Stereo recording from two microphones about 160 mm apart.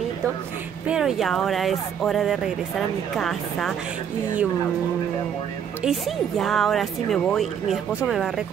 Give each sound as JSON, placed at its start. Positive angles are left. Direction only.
{"t": 0.8, "sound": "speech", "side_deg": -5}
{"t": 5.8, "sound": "speech", "side_deg": 0}